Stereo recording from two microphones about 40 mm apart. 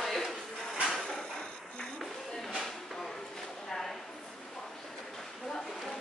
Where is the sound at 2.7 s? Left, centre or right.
Centre.